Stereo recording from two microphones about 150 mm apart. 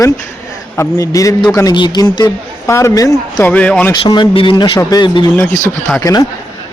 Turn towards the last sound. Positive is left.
turn(degrees=25)  # may be behind; listen again after turning